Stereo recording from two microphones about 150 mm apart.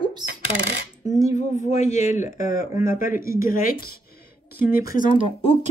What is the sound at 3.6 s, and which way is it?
Speech, 90° left.